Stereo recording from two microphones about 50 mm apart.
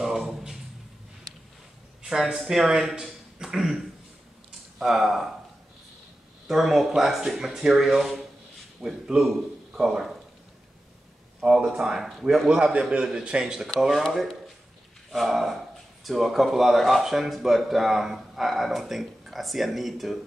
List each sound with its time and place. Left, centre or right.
0.0 s a sound: centre
2.0 s speech: centre
4.7 s speech: centre
6.4 s speech: centre
11.4 s speech: centre
12.4 s a man's voice: centre
15.0 s speech: centre